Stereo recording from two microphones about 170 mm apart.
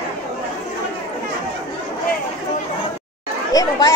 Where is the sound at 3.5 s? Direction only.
20° left (ahead or behind).